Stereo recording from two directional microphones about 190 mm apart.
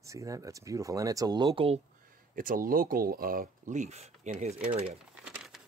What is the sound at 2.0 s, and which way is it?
Speech, 45° right (ahead or behind).